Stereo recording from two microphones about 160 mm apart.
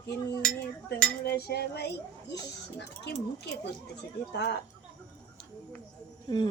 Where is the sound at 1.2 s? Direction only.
90° left.